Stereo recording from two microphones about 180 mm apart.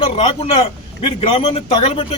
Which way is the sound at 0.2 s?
35° left (ahead or behind).